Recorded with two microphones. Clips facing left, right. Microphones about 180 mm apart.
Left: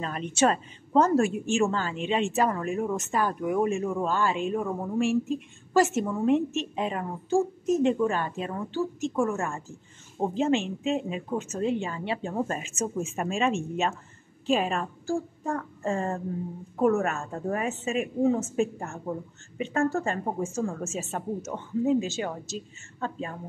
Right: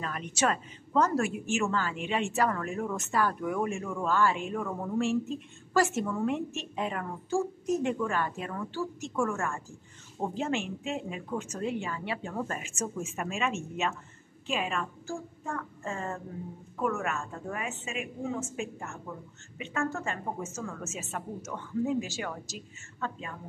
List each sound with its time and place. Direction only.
0.0 s a woman's voice: 30° left (ahead or behind)